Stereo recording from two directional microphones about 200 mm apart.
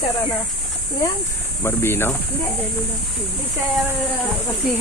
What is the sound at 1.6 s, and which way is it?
Speech, 10° left (ahead or behind).